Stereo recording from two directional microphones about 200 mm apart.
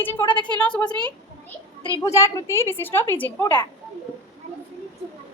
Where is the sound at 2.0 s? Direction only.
15° left (ahead or behind).